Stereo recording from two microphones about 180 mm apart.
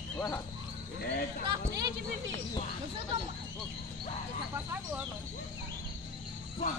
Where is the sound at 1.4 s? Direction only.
25° right (ahead or behind).